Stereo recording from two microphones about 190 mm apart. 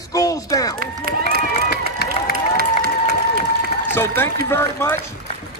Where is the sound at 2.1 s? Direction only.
50° right (ahead or behind).